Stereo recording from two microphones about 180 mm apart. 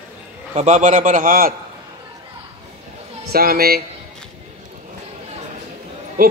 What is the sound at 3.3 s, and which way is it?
Speech, 55° right (ahead or behind).